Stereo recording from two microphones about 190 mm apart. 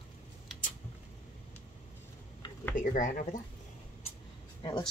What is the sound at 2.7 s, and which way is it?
Speech, 45° left (ahead or behind).